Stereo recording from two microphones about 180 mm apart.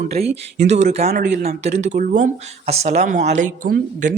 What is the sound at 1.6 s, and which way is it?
Speech, 40° right (ahead or behind).